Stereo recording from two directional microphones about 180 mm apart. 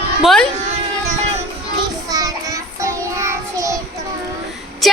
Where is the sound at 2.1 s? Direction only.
20° right (ahead or behind).